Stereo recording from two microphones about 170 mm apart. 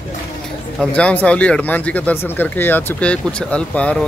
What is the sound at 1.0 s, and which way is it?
Speech, 5° left (ahead or behind).